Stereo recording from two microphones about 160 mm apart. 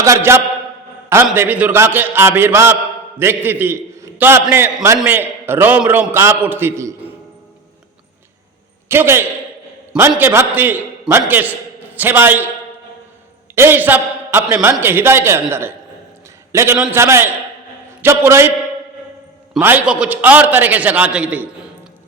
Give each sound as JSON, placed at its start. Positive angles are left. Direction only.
{"t": 0.0, "sound": "a man's voice", "side_deg": -20}
{"t": 8.9, "sound": "a man's voice", "side_deg": -15}
{"t": 13.6, "sound": "a man's voice", "side_deg": -15}
{"t": 19.5, "sound": "a man's voice", "side_deg": -10}